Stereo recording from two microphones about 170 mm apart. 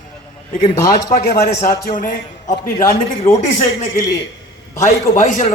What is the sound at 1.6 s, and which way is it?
A man's voice, 50° left (ahead or behind).